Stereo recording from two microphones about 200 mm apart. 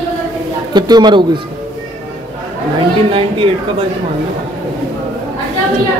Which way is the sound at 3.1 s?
25° right (ahead or behind).